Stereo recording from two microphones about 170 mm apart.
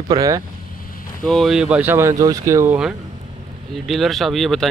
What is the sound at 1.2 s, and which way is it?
Speech, centre (ahead or behind).